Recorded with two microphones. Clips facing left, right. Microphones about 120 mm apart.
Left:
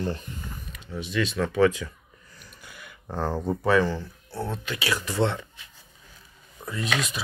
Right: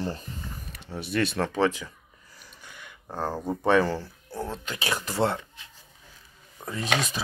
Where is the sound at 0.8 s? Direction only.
60° right (ahead or behind).